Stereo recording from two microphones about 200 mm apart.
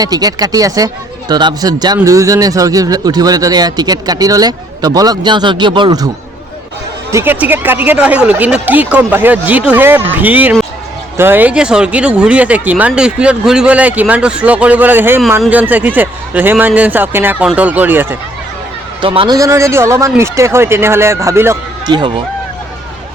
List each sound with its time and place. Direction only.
0.0 s speech: 20° right (ahead or behind)
7.1 s speech: 10° right (ahead or behind)
19.0 s speech: 25° right (ahead or behind)